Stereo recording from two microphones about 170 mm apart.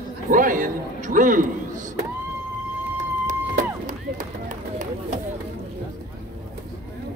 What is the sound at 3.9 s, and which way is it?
Run, 50° right (ahead or behind).